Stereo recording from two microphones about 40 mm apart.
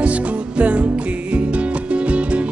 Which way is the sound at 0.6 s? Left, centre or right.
Right.